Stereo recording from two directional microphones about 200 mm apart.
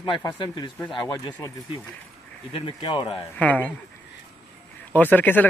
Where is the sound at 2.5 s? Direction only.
25° left (ahead or behind).